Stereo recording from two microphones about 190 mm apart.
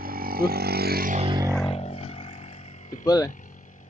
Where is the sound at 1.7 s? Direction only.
30° left (ahead or behind).